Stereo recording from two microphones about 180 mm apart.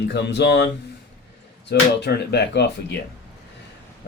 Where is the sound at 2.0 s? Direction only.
65° left (ahead or behind).